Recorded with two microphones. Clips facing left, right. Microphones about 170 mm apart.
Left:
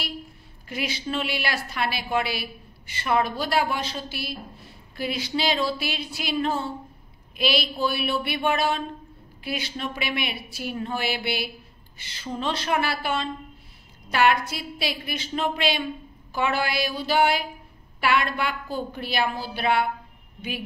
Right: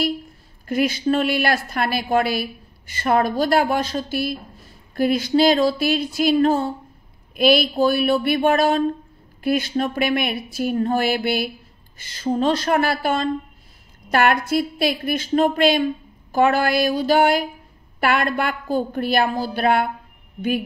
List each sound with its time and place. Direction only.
0.7 s a woman's voice: 45° right (ahead or behind)